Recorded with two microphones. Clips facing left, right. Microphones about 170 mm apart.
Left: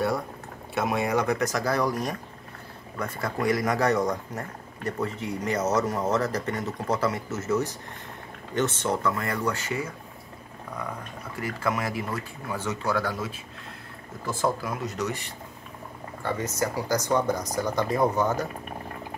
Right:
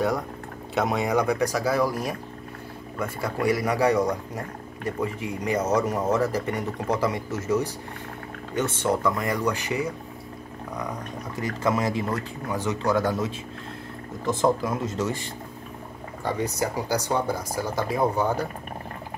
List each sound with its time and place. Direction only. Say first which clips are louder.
0.7 s speech: right 2 dB; 20° right (ahead or behind)
11.3 s speech: right 3 dB; 25° right (ahead or behind)
16.2 s speech: right 2 dB; 15° right (ahead or behind)